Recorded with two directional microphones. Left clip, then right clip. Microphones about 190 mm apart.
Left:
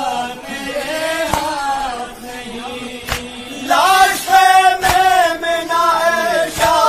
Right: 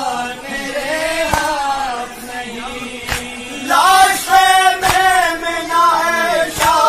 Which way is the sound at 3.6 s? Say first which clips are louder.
Right 1 dB; 25° left (ahead or behind).